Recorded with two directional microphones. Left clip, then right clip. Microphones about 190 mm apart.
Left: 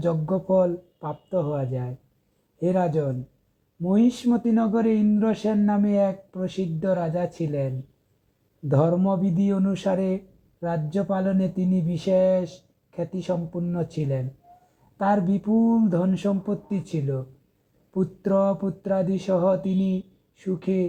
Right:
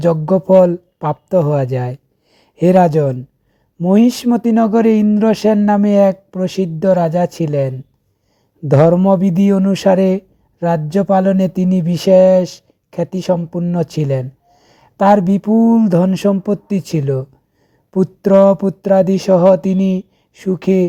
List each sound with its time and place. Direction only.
0.0 s speech: 40° right (ahead or behind)